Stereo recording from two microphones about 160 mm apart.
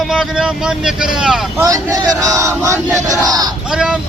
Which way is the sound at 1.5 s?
20° right (ahead or behind).